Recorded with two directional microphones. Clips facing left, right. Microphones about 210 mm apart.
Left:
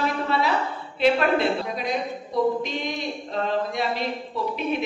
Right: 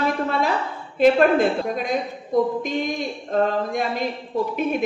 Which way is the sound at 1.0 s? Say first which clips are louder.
Right 5 dB; 45° right (ahead or behind).